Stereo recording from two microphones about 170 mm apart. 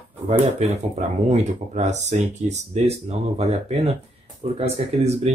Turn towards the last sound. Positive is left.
turn(degrees=-40)  # may be behind; listen again after turning